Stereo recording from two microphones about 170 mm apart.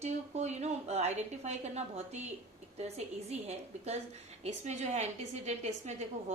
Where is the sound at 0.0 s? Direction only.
40° right (ahead or behind).